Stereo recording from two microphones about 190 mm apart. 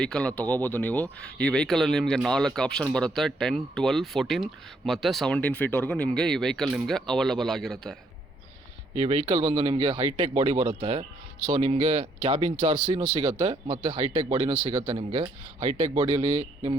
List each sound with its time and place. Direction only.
0.0 s speech: 5° left (ahead or behind)
9.0 s speech: 35° right (ahead or behind)